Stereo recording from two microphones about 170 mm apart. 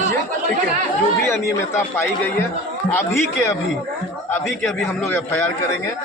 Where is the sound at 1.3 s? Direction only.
15° left (ahead or behind).